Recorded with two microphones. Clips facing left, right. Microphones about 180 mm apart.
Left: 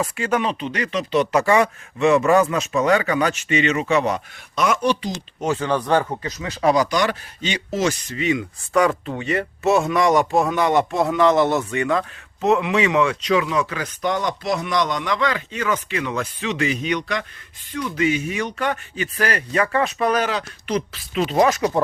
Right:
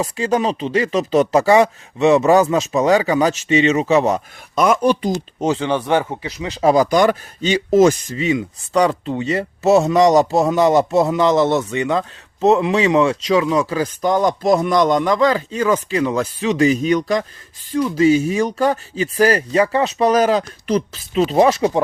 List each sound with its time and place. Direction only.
0.0 s speech: 30° right (ahead or behind)
0.9 s speech: 45° right (ahead or behind); by 3.8 s 25° right (ahead or behind)
4.0 s speech: 45° right (ahead or behind)
5.5 s speech: 20° right (ahead or behind)
6.9 s speech: 50° right (ahead or behind)
8.1 s speech: 30° right (ahead or behind)